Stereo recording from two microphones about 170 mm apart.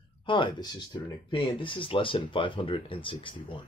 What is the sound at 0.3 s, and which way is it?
Speech, 30° left (ahead or behind).